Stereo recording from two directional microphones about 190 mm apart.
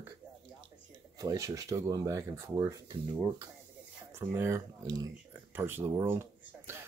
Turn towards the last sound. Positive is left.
turn(degrees=-10)  # may be behind; listen again after turning